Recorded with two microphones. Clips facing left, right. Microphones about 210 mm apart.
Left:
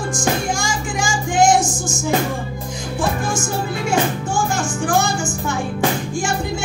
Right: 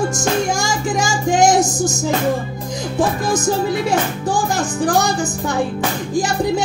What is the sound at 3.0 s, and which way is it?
Child singing, 35° right (ahead or behind).